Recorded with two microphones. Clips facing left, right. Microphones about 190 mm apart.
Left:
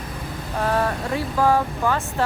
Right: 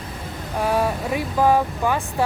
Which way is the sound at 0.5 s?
10° right (ahead or behind).